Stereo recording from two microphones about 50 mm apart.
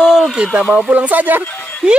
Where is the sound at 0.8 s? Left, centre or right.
Right.